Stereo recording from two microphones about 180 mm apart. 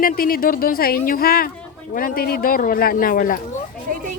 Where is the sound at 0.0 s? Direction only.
50° left (ahead or behind).